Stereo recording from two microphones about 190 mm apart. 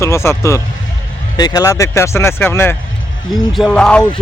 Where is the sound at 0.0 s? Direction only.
15° left (ahead or behind).